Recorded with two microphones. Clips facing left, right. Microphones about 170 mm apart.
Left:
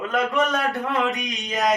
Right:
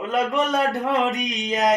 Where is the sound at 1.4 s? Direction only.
20° right (ahead or behind).